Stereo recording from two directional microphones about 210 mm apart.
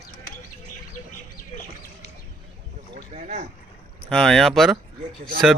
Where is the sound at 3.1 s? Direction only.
35° right (ahead or behind).